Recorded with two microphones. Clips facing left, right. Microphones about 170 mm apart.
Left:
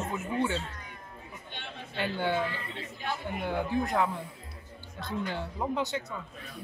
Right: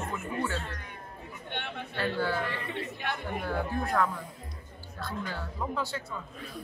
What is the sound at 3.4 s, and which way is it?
Speech, 15° left (ahead or behind).